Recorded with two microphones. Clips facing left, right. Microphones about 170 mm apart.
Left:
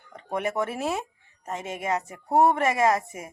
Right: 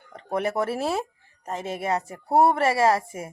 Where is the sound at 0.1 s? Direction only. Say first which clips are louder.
Right 2 dB; 35° right (ahead or behind).